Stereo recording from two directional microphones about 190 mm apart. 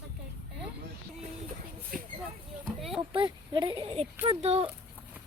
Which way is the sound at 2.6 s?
Centre (ahead or behind).